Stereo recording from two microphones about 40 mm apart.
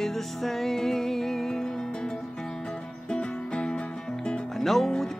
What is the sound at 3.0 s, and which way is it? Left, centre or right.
Music, left.